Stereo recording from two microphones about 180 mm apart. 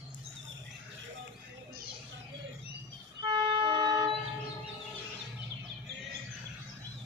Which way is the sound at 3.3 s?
25° right (ahead or behind).